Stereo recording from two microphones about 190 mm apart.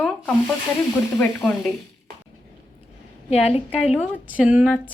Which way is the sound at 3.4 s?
30° left (ahead or behind).